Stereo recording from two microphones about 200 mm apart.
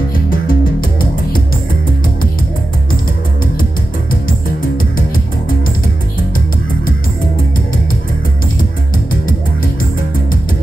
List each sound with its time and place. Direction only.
0.3 s music: 45° left (ahead or behind)